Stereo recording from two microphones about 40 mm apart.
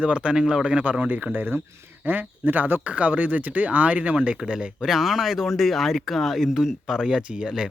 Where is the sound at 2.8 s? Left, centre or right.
Right.